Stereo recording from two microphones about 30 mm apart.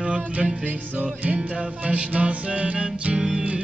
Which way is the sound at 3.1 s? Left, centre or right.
Right.